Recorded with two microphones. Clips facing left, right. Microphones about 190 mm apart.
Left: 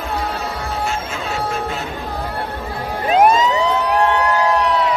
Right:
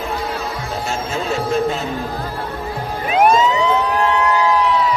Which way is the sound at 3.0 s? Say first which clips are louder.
Left 1 dB; 35° left (ahead or behind).